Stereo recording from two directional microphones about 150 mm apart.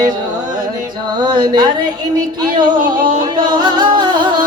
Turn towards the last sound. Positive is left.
turn(degrees=-30)  # may be behind; listen again after turning